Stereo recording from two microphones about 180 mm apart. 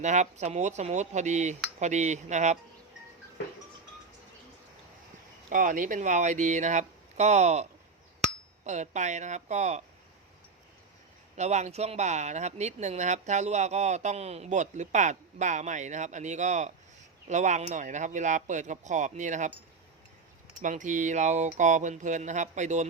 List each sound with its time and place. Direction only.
0.0 s speech: 40° right (ahead or behind)
5.5 s speech: 45° right (ahead or behind)
11.3 s speech: 40° right (ahead or behind)
20.6 s speech: 45° right (ahead or behind)